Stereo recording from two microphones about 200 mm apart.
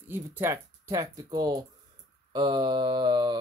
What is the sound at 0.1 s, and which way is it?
Speech, 10° right (ahead or behind).